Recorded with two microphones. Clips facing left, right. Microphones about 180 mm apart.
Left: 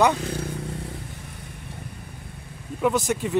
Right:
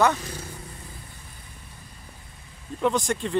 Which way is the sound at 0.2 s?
60° left (ahead or behind).